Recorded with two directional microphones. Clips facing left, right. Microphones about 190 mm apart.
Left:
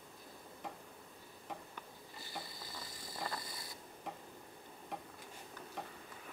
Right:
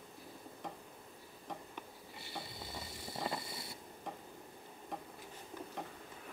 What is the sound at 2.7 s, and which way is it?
Vehicle, 25° right (ahead or behind).